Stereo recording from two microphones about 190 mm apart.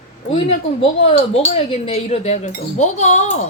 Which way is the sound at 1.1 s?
35° left (ahead or behind).